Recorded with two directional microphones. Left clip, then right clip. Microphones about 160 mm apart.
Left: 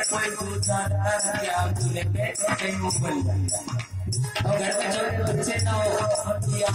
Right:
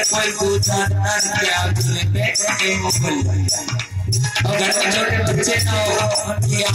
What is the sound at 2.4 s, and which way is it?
Music, 50° left (ahead or behind).